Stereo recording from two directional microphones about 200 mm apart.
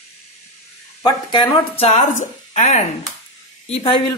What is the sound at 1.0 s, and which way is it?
A woman's voice, 20° left (ahead or behind).